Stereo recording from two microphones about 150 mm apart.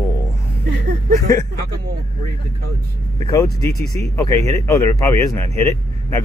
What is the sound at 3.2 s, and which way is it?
A man's voice, 25° left (ahead or behind).